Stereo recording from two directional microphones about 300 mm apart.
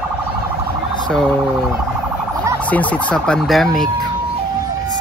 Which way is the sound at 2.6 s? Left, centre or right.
Centre.